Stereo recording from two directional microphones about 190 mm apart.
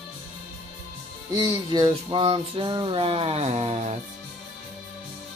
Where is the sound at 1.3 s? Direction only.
20° right (ahead or behind).